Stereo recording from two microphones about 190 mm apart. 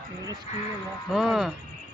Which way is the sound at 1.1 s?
Centre (ahead or behind).